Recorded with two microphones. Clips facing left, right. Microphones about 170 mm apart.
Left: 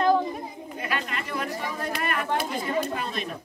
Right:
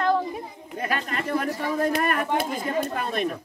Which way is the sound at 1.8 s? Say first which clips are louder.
Right 7 dB; 45° right (ahead or behind).